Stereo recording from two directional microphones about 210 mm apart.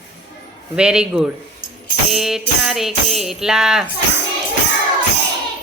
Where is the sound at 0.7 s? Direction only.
5° right (ahead or behind).